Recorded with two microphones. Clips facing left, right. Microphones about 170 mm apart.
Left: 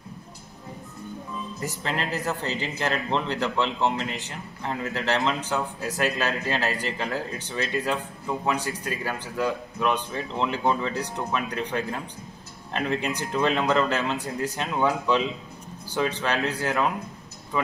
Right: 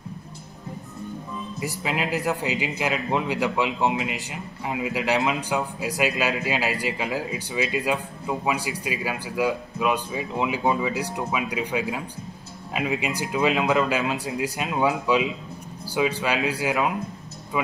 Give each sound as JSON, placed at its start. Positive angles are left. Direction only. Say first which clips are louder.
{"t": 1.6, "sound": "a man's voice", "louder": "right 3 dB", "side_deg": -10}